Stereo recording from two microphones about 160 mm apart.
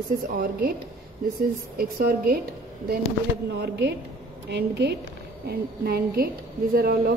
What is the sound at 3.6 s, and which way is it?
A woman's voice, 90° right.